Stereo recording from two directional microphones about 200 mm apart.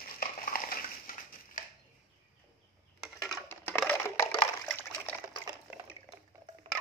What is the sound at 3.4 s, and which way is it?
Water, 10° left (ahead or behind).